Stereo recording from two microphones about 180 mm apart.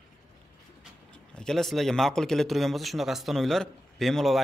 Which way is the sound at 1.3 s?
5° left (ahead or behind).